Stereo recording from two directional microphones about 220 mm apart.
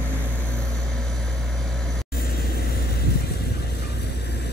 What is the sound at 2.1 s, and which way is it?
Vehicle, 45° left (ahead or behind).